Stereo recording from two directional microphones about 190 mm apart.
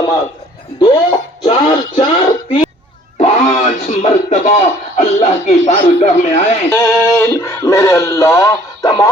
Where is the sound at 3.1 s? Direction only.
35° left (ahead or behind).